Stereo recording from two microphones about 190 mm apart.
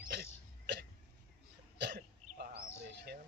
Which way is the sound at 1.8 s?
60° right (ahead or behind).